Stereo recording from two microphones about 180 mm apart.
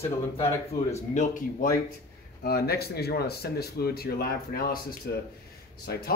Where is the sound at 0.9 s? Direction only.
40° left (ahead or behind).